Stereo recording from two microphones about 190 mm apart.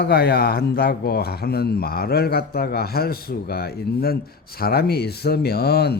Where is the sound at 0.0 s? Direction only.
55° left (ahead or behind).